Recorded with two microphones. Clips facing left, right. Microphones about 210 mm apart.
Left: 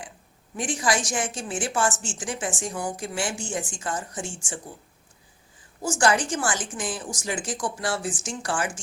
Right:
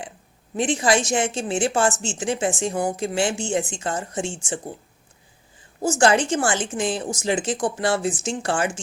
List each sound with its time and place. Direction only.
0.5 s speech: 25° right (ahead or behind)
5.8 s speech: 25° right (ahead or behind)